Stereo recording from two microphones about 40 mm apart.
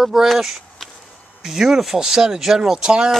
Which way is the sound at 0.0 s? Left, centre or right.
Centre.